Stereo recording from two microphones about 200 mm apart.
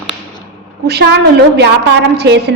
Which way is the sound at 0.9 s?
55° right (ahead or behind).